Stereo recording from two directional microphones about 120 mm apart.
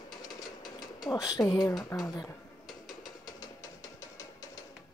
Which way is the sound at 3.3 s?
30° left (ahead or behind).